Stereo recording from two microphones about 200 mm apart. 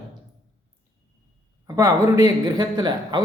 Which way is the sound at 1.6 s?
15° right (ahead or behind).